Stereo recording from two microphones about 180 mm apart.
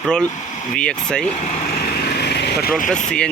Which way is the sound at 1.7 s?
60° left (ahead or behind).